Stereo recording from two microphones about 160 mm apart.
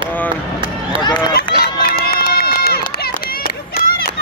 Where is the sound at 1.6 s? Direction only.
70° left (ahead or behind).